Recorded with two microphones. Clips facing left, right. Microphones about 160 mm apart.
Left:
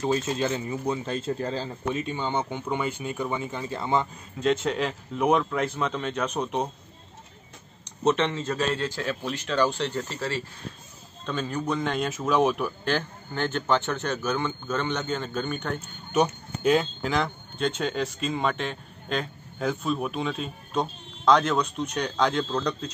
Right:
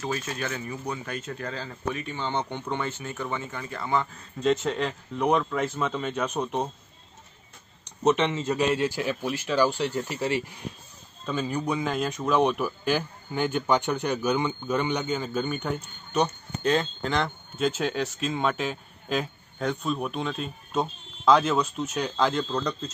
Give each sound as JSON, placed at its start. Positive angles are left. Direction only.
{"t": 0.0, "sound": "speech", "side_deg": 25}
{"t": 4.4, "sound": "speech", "side_deg": 0}
{"t": 8.1, "sound": "speech", "side_deg": -5}
{"t": 15.8, "sound": "speech", "side_deg": 10}